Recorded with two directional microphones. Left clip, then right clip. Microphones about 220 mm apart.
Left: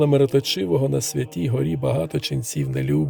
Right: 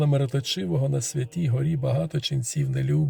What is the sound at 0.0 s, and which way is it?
Speech, 40° left (ahead or behind).